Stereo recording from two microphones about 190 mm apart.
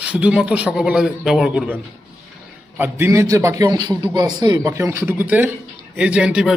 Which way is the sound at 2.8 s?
15° right (ahead or behind).